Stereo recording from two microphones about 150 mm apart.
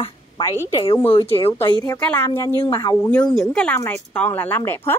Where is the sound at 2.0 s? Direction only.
10° left (ahead or behind).